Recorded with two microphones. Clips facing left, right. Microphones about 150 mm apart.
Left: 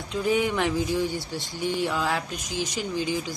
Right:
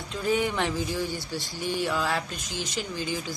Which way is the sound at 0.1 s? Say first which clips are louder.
Left 2 dB; 15° left (ahead or behind).